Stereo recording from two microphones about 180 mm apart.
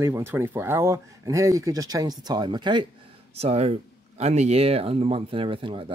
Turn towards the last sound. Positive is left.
turn(degrees=-30)  # may be behind; listen again after turning